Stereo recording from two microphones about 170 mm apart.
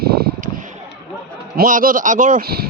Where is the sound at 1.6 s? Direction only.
55° right (ahead or behind).